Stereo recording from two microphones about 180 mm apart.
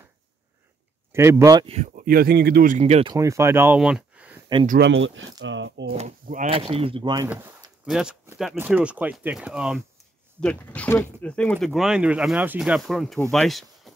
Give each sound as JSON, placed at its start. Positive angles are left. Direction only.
{"t": 1.1, "sound": "speech", "side_deg": -15}
{"t": 1.7, "sound": "speech", "side_deg": -40}
{"t": 2.0, "sound": "speech", "side_deg": -60}
{"t": 2.8, "sound": "speech", "side_deg": -30}
{"t": 3.2, "sound": "speech", "side_deg": -15}
{"t": 4.7, "sound": "speech", "side_deg": -85}
{"t": 5.9, "sound": "speech", "side_deg": -40}
{"t": 7.2, "sound": "speech", "side_deg": -10}
{"t": 10.4, "sound": "speech", "side_deg": 5}